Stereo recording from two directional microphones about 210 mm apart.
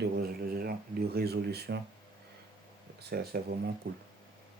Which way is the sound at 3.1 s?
50° right (ahead or behind).